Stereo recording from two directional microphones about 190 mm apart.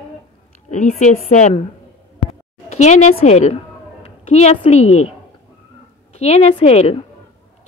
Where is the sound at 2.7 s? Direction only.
40° left (ahead or behind).